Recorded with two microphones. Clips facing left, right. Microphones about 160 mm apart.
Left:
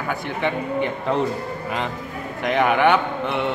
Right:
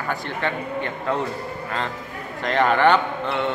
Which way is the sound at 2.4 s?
10° left (ahead or behind).